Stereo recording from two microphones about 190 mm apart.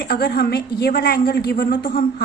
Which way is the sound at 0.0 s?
55° left (ahead or behind).